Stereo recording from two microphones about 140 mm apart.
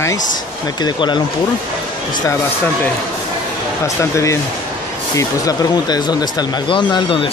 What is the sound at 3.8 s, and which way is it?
Speech, 20° left (ahead or behind).